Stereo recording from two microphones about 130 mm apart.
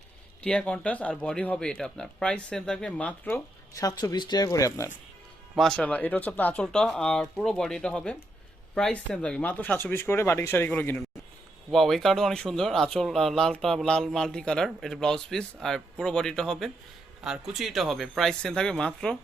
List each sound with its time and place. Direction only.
0.4 s speech: 10° left (ahead or behind)
3.8 s speech: 25° left (ahead or behind)
5.5 s speech: 5° left (ahead or behind)
11.7 s speech: centre (ahead or behind)